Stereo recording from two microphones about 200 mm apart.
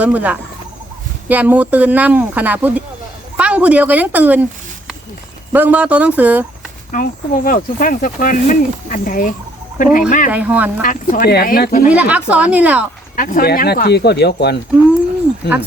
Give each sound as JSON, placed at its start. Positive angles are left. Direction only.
{"t": 0.0, "sound": "speech", "side_deg": -5}
{"t": 5.5, "sound": "speech", "side_deg": -10}
{"t": 6.9, "sound": "speech", "side_deg": 45}
{"t": 10.3, "sound": "speech", "side_deg": -10}
{"t": 10.8, "sound": "speech", "side_deg": 45}
{"t": 11.9, "sound": "speech", "side_deg": -5}
{"t": 13.1, "sound": "speech", "side_deg": 45}